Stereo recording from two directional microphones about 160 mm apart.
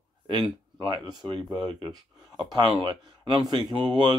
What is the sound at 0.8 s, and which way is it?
Speech, 25° right (ahead or behind).